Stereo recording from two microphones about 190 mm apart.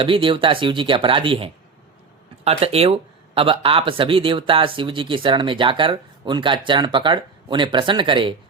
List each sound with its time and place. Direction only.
0.0 s speech: 25° right (ahead or behind)